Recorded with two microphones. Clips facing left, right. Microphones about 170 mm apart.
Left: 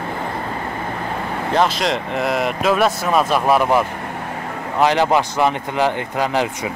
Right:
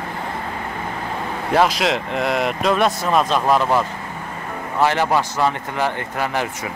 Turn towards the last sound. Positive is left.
turn(degrees=15)  # may be behind; listen again after turning